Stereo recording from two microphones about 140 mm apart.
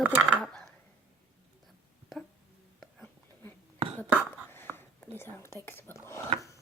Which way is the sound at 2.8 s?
5° left (ahead or behind).